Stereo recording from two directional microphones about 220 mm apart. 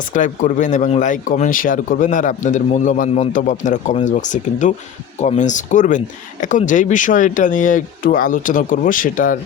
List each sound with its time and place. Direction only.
0.1 s speech: 35° left (ahead or behind)